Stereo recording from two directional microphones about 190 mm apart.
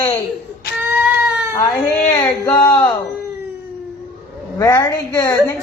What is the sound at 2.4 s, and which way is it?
Speech, 15° left (ahead or behind).